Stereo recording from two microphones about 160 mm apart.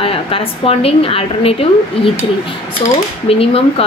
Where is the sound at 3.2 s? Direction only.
35° left (ahead or behind).